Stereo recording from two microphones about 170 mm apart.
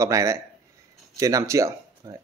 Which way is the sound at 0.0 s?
15° right (ahead or behind).